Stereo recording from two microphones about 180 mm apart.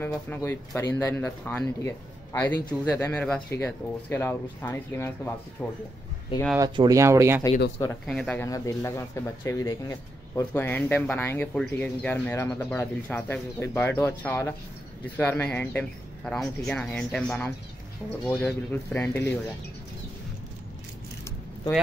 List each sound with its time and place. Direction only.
0.0 s speech: 10° left (ahead or behind)
2.9 s speech: 10° left (ahead or behind)
6.6 s speech: 25° right (ahead or behind)
8.1 s speech: 5° left (ahead or behind)
8.5 s speech: 20° left (ahead or behind)